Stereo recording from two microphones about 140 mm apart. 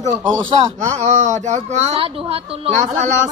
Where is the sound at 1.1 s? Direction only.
60° right (ahead or behind); by 2.7 s 45° right (ahead or behind).